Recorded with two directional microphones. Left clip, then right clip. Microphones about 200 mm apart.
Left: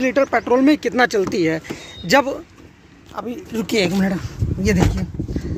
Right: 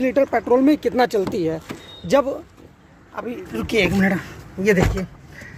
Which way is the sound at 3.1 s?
20° left (ahead or behind).